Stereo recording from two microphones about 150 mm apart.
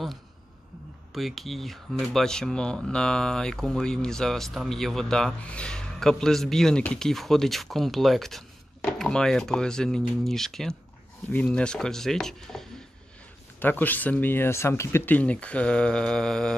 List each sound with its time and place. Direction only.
1.1 s speech: centre (ahead or behind)